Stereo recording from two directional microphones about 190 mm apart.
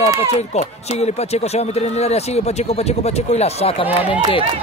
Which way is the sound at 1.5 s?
35° left (ahead or behind).